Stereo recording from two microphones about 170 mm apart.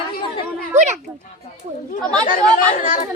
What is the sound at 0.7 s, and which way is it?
Speech, 45° right (ahead or behind).